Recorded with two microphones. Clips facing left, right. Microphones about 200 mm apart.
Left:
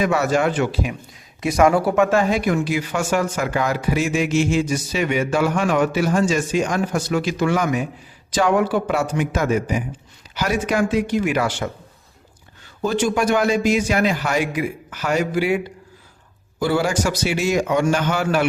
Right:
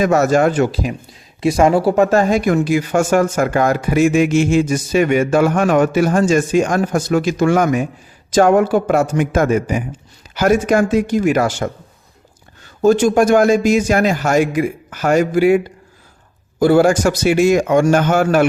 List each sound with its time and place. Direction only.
0.0 s speech: 45° right (ahead or behind)
1.4 s speech: 30° right (ahead or behind); by 11.7 s 45° right (ahead or behind)
12.8 s speech: 45° right (ahead or behind)